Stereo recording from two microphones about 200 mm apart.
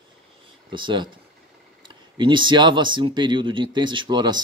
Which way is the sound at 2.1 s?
25° right (ahead or behind).